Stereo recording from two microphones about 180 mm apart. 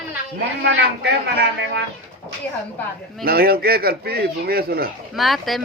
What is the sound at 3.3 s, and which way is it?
Speech, 60° right (ahead or behind).